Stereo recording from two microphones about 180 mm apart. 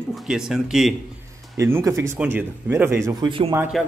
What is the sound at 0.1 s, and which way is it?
Speech, centre (ahead or behind).